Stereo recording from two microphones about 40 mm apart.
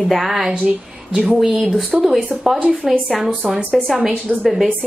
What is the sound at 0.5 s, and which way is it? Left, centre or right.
Speech, right.